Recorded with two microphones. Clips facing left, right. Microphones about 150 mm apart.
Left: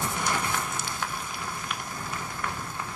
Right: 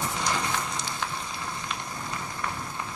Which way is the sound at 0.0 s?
5° left (ahead or behind).